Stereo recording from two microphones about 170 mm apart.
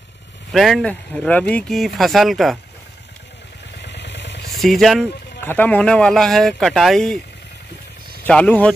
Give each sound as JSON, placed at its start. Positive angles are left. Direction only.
{"t": 0.5, "sound": "speech", "side_deg": 0}
{"t": 3.8, "sound": "vehicle", "side_deg": 90}
{"t": 4.6, "sound": "speech", "side_deg": 0}
{"t": 5.4, "sound": "speech", "side_deg": 10}
{"t": 8.3, "sound": "speech", "side_deg": 5}